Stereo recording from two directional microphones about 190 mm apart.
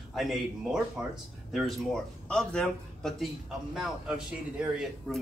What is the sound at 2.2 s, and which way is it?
A man's voice, 5° left (ahead or behind).